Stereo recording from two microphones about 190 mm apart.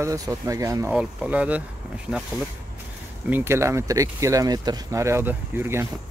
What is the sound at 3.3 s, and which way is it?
Speech, 10° right (ahead or behind).